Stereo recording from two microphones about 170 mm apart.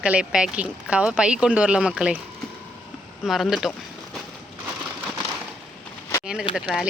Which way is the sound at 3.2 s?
Centre (ahead or behind).